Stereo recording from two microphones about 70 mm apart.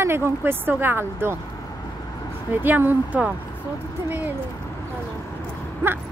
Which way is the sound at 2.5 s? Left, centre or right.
Right.